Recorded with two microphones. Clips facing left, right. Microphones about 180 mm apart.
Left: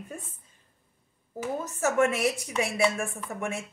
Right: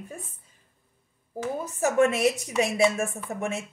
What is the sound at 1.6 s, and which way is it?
A woman's voice, 15° right (ahead or behind).